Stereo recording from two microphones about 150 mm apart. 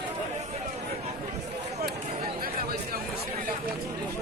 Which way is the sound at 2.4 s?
80° right.